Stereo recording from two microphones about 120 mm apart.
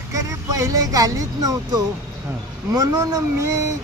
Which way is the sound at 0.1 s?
30° right (ahead or behind).